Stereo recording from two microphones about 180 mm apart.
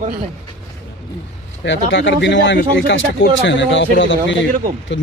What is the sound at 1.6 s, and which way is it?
Speech, 80° left.